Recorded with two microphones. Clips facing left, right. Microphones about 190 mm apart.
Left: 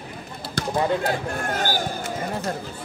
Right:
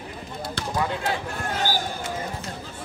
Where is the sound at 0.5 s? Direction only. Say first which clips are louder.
Left 5 dB; 40° left (ahead or behind).